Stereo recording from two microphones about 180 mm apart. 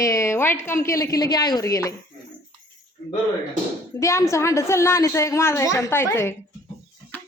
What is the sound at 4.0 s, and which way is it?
Speech, 15° left (ahead or behind).